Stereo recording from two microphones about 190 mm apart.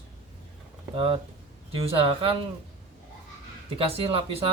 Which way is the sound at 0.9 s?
25° right (ahead or behind).